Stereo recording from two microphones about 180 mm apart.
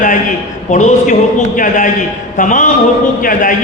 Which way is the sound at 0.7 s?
45° left (ahead or behind).